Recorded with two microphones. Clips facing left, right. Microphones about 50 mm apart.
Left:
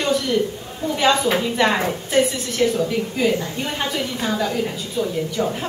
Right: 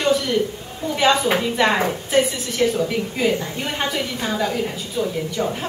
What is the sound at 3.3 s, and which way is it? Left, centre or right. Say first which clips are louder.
Speech: even; right.